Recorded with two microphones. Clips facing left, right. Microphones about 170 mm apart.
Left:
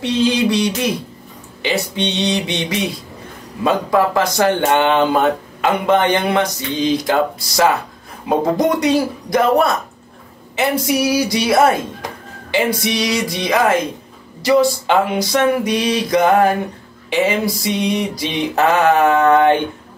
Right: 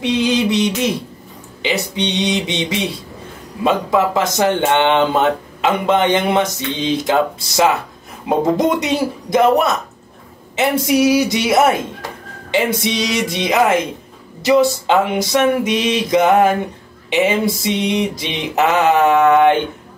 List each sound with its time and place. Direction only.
0.0 s speech: 15° right (ahead or behind)